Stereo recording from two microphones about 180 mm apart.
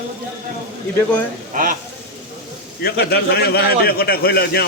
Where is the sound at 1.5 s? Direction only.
50° right (ahead or behind).